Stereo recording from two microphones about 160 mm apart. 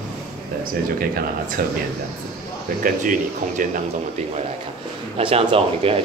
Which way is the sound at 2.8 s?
55° right (ahead or behind).